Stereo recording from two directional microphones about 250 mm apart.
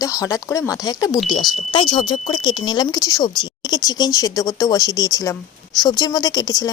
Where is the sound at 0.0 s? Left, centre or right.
Centre.